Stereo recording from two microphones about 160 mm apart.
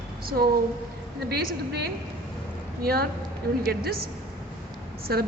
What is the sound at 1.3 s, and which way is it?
A woman's voice, 75° right (ahead or behind).